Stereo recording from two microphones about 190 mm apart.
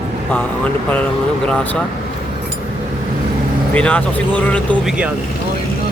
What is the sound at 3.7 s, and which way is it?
Speech, 5° left (ahead or behind).